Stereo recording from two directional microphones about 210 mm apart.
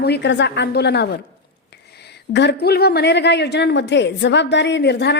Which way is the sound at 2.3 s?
50° left (ahead or behind).